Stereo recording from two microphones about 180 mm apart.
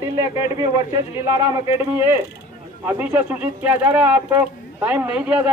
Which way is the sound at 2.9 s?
10° right (ahead or behind).